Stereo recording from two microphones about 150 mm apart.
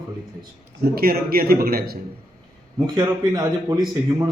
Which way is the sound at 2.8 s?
30° right (ahead or behind).